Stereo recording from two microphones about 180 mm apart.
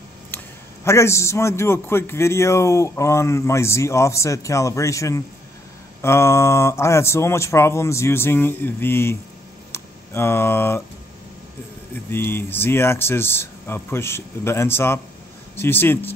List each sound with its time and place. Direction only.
0.8 s a man's voice: 15° left (ahead or behind)
9.7 s a sound: 15° left (ahead or behind)
12.3 s a man's voice: 10° left (ahead or behind)